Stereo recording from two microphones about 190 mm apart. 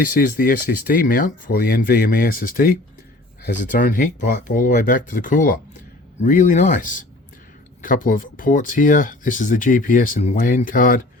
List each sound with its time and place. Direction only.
0.0 s speech: 50° left (ahead or behind)